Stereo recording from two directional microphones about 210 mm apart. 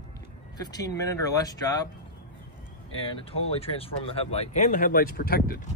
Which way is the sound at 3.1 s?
30° left (ahead or behind).